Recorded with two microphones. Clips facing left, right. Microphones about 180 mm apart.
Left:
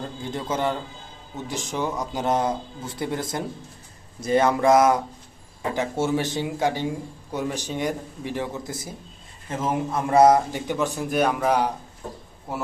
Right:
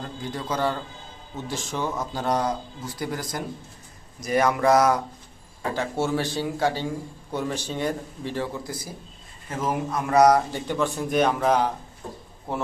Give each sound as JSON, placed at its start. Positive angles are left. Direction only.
{"t": 0.2, "sound": "a man's voice", "side_deg": 25}
{"t": 10.5, "sound": "speech", "side_deg": 15}